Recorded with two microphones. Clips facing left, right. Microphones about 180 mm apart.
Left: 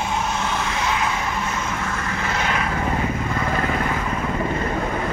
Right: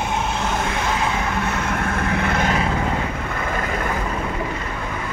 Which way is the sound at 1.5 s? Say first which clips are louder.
Right 3 dB; 60° right (ahead or behind).